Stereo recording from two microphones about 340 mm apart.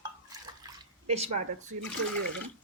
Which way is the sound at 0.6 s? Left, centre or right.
Centre.